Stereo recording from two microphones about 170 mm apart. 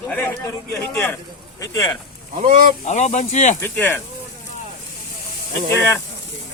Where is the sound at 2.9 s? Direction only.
45° left (ahead or behind).